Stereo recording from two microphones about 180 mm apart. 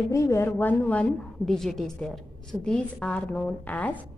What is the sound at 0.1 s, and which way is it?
A woman's voice, 15° left (ahead or behind).